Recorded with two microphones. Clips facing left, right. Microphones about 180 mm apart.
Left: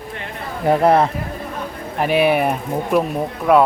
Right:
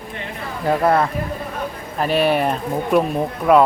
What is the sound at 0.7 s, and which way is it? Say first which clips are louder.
Speech: left 3 dB; 25° left (ahead or behind).